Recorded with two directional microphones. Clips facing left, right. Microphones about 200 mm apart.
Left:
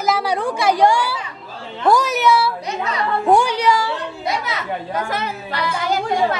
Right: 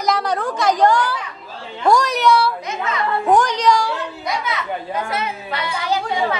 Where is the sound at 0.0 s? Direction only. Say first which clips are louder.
Left 1 dB; 5° left (ahead or behind).